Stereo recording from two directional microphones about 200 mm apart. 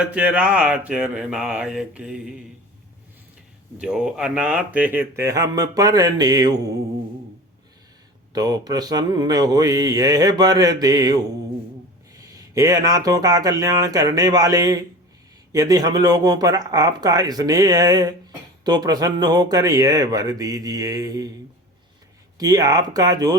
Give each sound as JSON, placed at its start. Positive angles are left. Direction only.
{"t": 0.0, "sound": "a sound", "side_deg": -5}
{"t": 3.8, "sound": "speech", "side_deg": -5}
{"t": 8.3, "sound": "speech", "side_deg": -20}
{"t": 22.4, "sound": "speech", "side_deg": -20}